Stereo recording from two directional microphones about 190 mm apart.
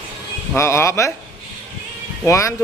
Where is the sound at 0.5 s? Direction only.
15° left (ahead or behind).